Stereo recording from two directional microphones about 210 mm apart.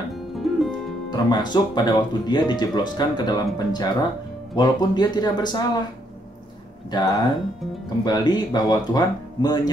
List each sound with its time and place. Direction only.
0.1 s music: centre (ahead or behind)
1.1 s speech: 20° left (ahead or behind)
6.9 s speech: 20° left (ahead or behind)